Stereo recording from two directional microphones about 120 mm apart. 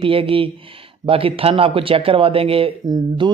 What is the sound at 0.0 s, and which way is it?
Speech, 50° right (ahead or behind).